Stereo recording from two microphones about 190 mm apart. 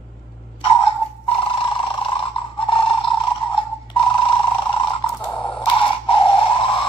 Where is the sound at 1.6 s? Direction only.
30° left (ahead or behind).